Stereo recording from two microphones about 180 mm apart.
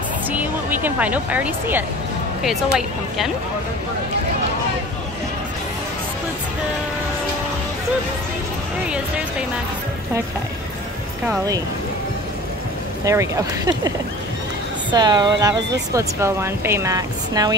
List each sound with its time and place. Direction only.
0.3 s speech: 10° right (ahead or behind)
13.0 s speech: 15° right (ahead or behind)